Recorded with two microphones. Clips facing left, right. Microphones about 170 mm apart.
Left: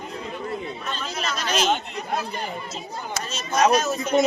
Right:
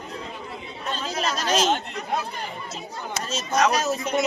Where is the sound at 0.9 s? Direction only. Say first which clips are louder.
Right 5 dB; 35° right (ahead or behind).